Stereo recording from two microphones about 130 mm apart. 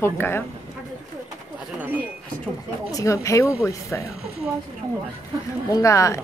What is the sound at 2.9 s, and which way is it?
Speech, 25° left (ahead or behind).